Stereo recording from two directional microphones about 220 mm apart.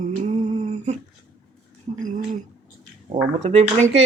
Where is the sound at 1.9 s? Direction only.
25° right (ahead or behind).